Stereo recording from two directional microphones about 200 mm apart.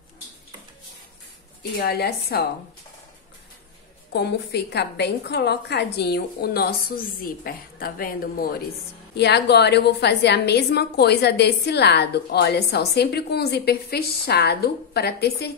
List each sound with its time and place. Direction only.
1.6 s speech: 50° left (ahead or behind)
4.1 s a woman's voice: 55° left (ahead or behind)